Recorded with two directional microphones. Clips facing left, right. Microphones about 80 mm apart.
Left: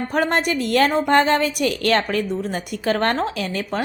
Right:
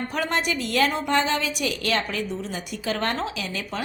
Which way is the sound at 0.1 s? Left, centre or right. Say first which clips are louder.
Left 7 dB; left.